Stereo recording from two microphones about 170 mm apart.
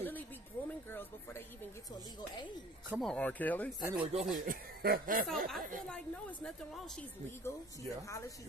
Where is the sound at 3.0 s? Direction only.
5° left (ahead or behind).